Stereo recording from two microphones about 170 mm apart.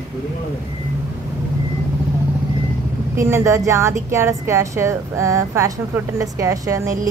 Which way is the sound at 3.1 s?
15° right (ahead or behind).